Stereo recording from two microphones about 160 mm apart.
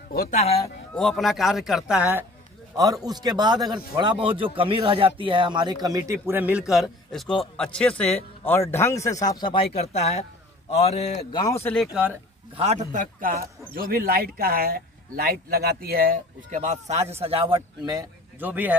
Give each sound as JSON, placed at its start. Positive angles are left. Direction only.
{"t": 0.3, "sound": "speech", "side_deg": 40}
{"t": 0.9, "sound": "a man's voice", "side_deg": 0}
{"t": 2.7, "sound": "a man's voice", "side_deg": -20}
{"t": 6.7, "sound": "a man's voice", "side_deg": 0}
{"t": 9.8, "sound": "speech", "side_deg": 40}
{"t": 11.3, "sound": "speech", "side_deg": 20}
{"t": 11.7, "sound": "a man's voice", "side_deg": 0}
{"t": 12.9, "sound": "a man's voice", "side_deg": -55}
{"t": 13.7, "sound": "speech", "side_deg": -65}
{"t": 18.4, "sound": "a man's voice", "side_deg": -10}